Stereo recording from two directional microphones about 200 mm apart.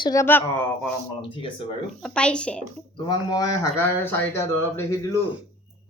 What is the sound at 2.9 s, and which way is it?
A child's voice, 20° left (ahead or behind).